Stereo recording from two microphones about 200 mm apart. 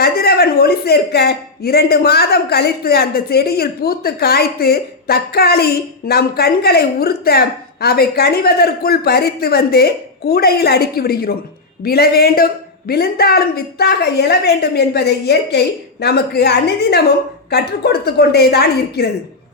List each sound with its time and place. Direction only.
0.0 s a woman's voice: 50° left (ahead or behind)